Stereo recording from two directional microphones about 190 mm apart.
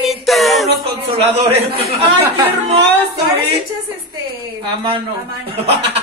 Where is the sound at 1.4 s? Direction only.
30° right (ahead or behind).